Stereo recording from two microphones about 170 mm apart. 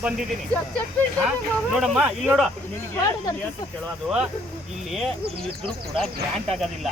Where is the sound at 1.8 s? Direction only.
5° right (ahead or behind).